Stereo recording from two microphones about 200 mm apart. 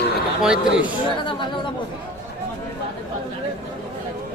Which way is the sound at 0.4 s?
5° right (ahead or behind).